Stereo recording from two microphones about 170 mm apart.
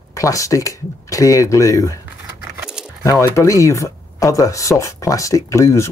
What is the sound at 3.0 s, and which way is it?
Speech, 15° left (ahead or behind).